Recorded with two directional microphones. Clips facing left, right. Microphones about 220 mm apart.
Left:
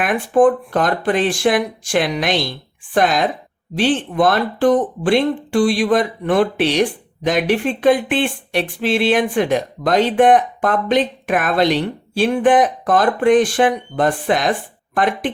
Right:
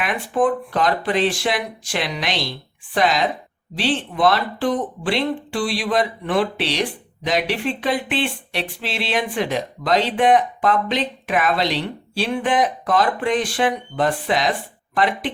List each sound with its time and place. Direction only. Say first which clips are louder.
0.0 s speech: left 6 dB; 50° left (ahead or behind)